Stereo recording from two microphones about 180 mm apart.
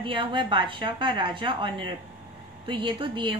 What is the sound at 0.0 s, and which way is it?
A woman's voice, 30° right (ahead or behind).